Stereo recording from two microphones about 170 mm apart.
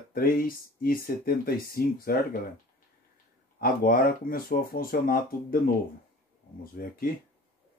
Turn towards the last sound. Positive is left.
turn(degrees=60)  # may be behind; listen again after turning